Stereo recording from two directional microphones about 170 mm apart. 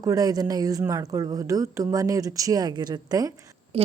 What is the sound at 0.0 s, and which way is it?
A woman's voice, 20° right (ahead or behind).